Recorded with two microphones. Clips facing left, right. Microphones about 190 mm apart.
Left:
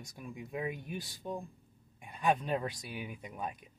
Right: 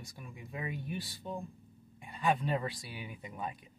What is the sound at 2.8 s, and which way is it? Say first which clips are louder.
Speech: left 3 dB; 15° left (ahead or behind).